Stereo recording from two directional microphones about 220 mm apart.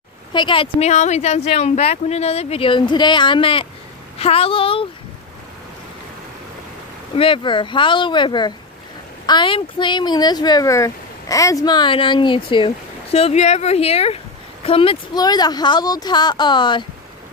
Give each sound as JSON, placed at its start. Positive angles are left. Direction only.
{"t": 0.3, "sound": "speech", "side_deg": 20}
{"t": 7.2, "sound": "speech", "side_deg": 25}